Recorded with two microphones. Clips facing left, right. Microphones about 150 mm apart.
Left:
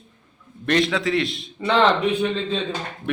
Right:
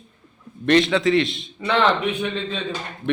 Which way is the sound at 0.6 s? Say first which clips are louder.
Right 4 dB; centre (ahead or behind).